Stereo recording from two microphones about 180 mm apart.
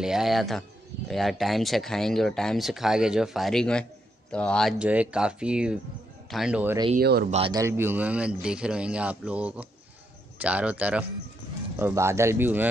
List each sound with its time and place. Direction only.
0.0 s speech: centre (ahead or behind)
4.7 s a man's voice: 5° right (ahead or behind)
7.0 s speech: 55° right (ahead or behind)
7.2 s speech: 35° right (ahead or behind)
7.5 s a man's voice: 15° right (ahead or behind)